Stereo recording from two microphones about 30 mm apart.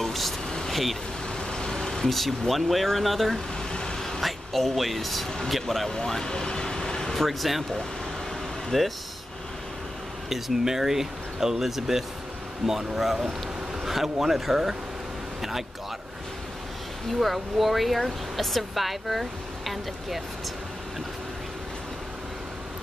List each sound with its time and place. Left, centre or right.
0.0 s a sound: centre
0.7 s vehicle: centre
1.5 s vehicle: left
2.0 s speech: centre
5.9 s speech: centre
7.2 s speech: centre
8.7 s speech: centre
10.3 s speech: centre
17.1 s speech: centre